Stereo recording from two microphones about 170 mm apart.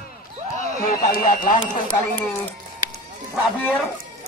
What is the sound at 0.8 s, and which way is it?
Speech, 60° left (ahead or behind).